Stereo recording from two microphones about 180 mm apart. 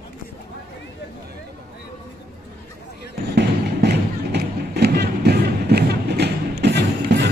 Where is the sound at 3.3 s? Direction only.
65° right (ahead or behind).